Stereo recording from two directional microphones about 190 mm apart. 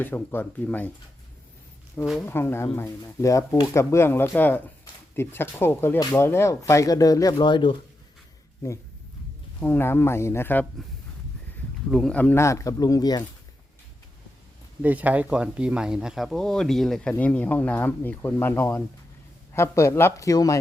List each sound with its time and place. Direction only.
0.0 s speech: 10° left (ahead or behind)
2.2 s speech: 10° left (ahead or behind)
9.6 s speech: 10° left (ahead or behind)
11.9 s speech: centre (ahead or behind); by 13.2 s 20° left (ahead or behind)
14.8 s speech: 10° right (ahead or behind); by 20.6 s 20° left (ahead or behind)